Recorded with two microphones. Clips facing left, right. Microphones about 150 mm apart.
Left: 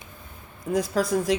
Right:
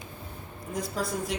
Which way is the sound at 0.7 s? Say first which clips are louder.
Left 8 dB; 90° left.